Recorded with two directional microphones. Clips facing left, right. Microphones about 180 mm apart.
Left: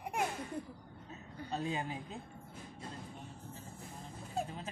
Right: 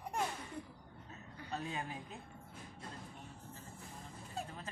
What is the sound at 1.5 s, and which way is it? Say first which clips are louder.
Speech: left 4 dB; 25° left (ahead or behind).